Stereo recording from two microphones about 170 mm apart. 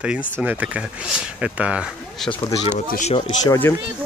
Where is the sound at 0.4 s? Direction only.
5° right (ahead or behind).